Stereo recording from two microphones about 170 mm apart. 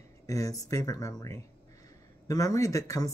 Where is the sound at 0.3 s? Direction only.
20° left (ahead or behind).